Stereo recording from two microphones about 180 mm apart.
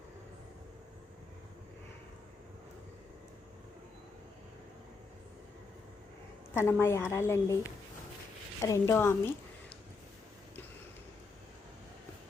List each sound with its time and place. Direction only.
6.5 s a woman's voice: 15° left (ahead or behind)